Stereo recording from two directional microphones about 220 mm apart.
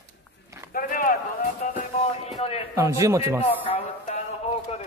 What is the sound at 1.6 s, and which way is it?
Music, 35° left (ahead or behind).